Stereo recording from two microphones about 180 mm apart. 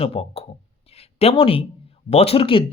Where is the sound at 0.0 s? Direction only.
35° left (ahead or behind).